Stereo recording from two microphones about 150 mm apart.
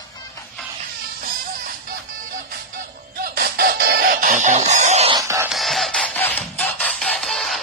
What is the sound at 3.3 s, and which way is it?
Chicken, 85° right.